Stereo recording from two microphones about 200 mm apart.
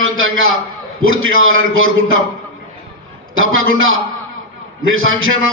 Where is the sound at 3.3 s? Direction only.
80° right.